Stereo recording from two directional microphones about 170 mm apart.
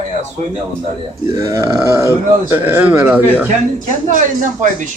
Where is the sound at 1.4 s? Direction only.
20° right (ahead or behind).